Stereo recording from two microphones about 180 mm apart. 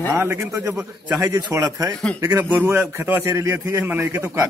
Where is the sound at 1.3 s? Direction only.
20° right (ahead or behind).